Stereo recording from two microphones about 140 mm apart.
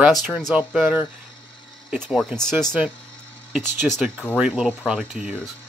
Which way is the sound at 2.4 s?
5° left (ahead or behind).